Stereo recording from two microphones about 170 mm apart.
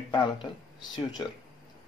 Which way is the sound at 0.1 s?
25° left (ahead or behind).